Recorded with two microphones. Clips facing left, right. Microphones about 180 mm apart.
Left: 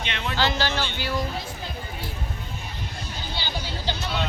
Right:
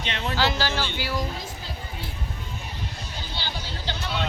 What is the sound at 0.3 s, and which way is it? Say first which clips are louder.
Speech: left 1 dB; 5° right (ahead or behind).